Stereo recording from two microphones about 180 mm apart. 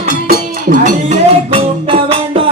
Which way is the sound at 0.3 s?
50° right (ahead or behind).